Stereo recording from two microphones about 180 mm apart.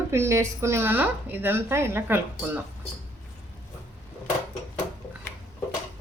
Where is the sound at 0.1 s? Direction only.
15° right (ahead or behind).